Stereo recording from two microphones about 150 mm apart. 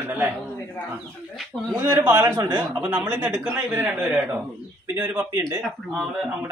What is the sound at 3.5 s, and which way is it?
A man's voice, 10° right (ahead or behind).